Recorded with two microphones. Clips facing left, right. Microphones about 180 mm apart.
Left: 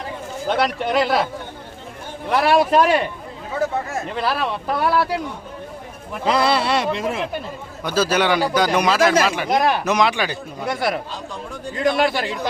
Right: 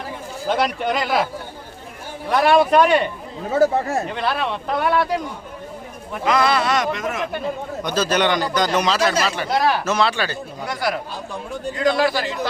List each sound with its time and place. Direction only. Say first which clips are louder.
0.4 s speech: even; centre (ahead or behind)
2.3 s speech: right 1 dB; centre (ahead or behind)
3.5 s speech: right 6 dB; 35° right (ahead or behind)
4.1 s speech: even; 5° left (ahead or behind)
6.2 s speech: even; 30° left (ahead or behind)
7.9 s speech: left 1 dB; 10° left (ahead or behind)
10.7 s speech: left 2 dB; 25° left (ahead or behind)